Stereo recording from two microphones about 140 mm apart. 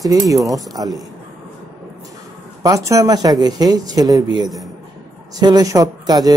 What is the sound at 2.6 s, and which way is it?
Speech, 25° right (ahead or behind).